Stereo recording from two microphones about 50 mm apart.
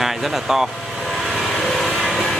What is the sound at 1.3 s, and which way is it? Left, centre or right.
Vehicle, centre.